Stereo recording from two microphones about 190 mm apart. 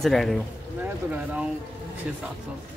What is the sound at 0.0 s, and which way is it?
Speech, centre (ahead or behind).